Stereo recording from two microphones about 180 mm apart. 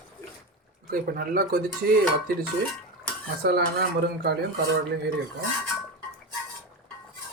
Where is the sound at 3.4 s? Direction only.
60° right (ahead or behind).